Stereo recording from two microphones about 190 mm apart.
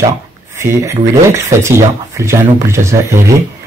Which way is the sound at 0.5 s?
15° right (ahead or behind).